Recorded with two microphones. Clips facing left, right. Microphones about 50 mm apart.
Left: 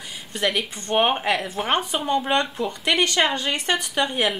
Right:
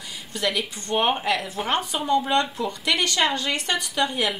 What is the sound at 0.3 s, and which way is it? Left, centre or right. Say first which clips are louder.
Speech: left 2 dB; left.